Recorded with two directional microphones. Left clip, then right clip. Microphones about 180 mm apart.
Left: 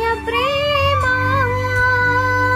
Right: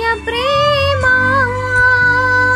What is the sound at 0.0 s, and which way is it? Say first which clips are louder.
Music: right 2 dB; 20° right (ahead or behind).